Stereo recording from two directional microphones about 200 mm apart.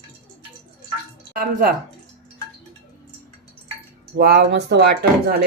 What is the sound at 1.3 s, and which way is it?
Speech, 45° right (ahead or behind).